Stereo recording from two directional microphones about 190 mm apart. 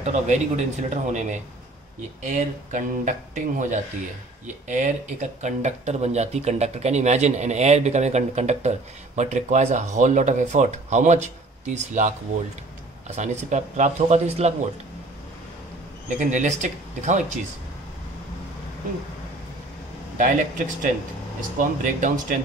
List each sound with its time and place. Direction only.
0.0 s speech: 40° right (ahead or behind)
13.1 s speech: 40° right (ahead or behind)
16.2 s speech: 40° right (ahead or behind)
20.2 s speech: 40° right (ahead or behind)